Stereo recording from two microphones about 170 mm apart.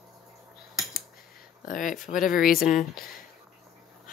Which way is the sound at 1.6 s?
50° left (ahead or behind).